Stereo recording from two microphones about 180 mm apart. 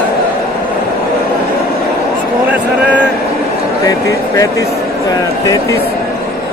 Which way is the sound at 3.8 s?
20° left (ahead or behind).